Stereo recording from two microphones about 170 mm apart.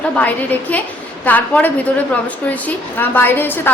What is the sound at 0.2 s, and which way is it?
A woman's voice, 10° left (ahead or behind).